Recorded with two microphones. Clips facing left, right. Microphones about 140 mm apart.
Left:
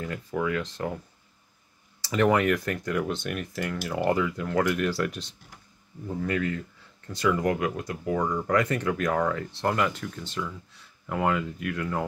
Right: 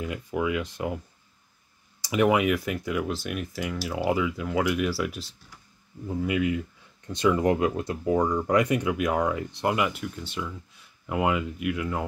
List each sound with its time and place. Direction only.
0.0 s speech: 15° right (ahead or behind)
7.1 s speech: 20° right (ahead or behind); by 12.1 s 5° right (ahead or behind)